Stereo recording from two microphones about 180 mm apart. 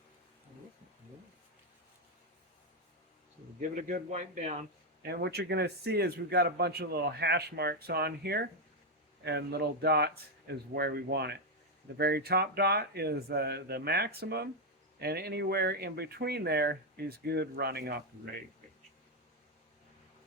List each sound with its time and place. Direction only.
3.6 s a man's voice: 45° right (ahead or behind)
5.0 s a man's voice: 65° right (ahead or behind)